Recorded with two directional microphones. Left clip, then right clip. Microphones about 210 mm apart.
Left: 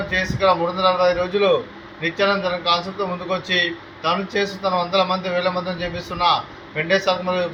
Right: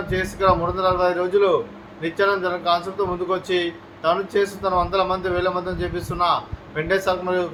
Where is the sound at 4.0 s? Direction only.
20° right (ahead or behind).